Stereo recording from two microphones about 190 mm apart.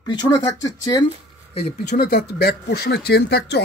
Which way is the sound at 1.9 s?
55° left (ahead or behind).